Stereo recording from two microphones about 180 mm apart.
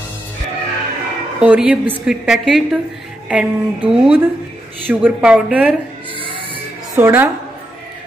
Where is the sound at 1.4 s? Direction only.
5° right (ahead or behind).